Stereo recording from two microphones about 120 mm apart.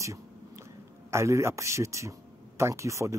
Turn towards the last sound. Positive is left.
turn(degrees=-25)  # may be behind; listen again after turning